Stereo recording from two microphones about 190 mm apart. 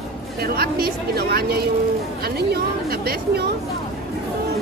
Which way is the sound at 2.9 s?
55° right (ahead or behind).